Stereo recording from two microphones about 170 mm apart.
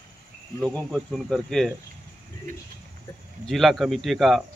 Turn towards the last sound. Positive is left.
turn(degrees=0)  # may be behind; listen again after turning